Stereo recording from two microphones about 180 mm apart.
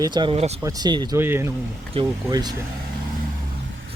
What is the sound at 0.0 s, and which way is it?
Speech, 25° right (ahead or behind).